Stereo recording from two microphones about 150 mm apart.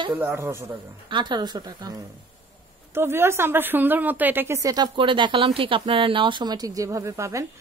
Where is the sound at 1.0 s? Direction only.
30° right (ahead or behind).